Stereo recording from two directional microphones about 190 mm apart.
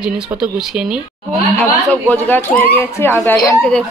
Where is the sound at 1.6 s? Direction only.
10° left (ahead or behind).